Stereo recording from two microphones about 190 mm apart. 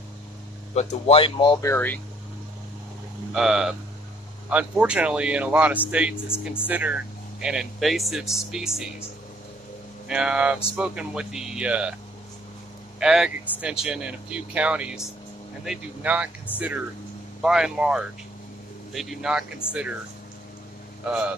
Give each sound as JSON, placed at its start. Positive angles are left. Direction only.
{"t": 0.7, "sound": "speech", "side_deg": 30}
{"t": 3.3, "sound": "speech", "side_deg": 0}
{"t": 10.0, "sound": "speech", "side_deg": -5}
{"t": 13.0, "sound": "speech", "side_deg": -5}